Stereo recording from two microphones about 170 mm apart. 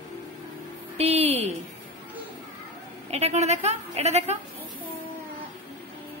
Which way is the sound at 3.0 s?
40° right (ahead or behind).